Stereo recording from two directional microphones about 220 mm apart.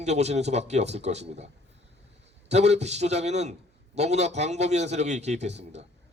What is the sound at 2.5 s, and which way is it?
A man's voice, 30° right (ahead or behind).